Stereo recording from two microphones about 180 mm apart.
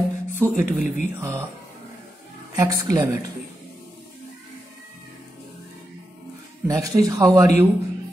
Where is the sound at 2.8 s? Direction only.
20° right (ahead or behind).